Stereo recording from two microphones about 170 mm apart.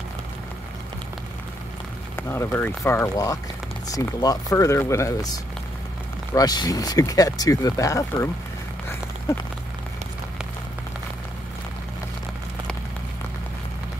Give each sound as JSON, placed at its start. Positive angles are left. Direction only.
{"t": 2.1, "sound": "speech", "side_deg": 10}